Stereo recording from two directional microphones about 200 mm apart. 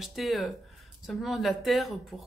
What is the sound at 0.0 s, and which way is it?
Speech, centre (ahead or behind).